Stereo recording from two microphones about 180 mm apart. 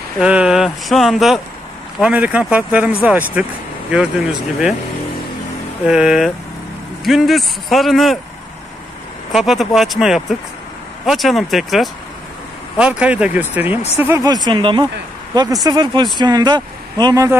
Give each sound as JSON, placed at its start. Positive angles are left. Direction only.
{"t": 0.2, "sound": "speech", "side_deg": -5}
{"t": 5.9, "sound": "speech", "side_deg": -5}
{"t": 9.3, "sound": "speech", "side_deg": 0}